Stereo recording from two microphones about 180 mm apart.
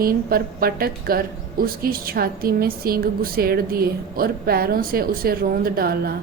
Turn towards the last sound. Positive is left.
turn(degrees=-55)  # may be behind; listen again after turning